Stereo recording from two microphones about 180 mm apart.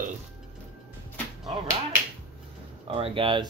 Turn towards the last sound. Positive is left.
turn(degrees=-30)  # may be behind; listen again after turning